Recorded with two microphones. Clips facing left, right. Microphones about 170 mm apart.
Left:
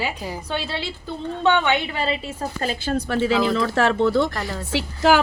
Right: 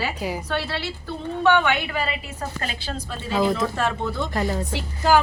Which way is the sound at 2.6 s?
50° left (ahead or behind).